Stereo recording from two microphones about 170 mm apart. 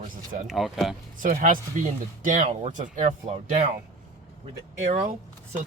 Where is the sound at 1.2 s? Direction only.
55° right (ahead or behind).